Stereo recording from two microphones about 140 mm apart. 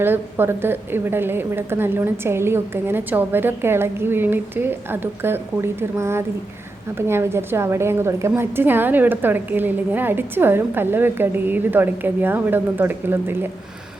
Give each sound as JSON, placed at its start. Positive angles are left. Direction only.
{"t": 0.0, "sound": "a woman's voice", "side_deg": -15}